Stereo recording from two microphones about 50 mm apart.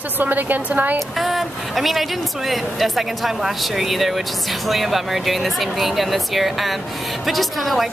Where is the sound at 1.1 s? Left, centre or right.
Centre.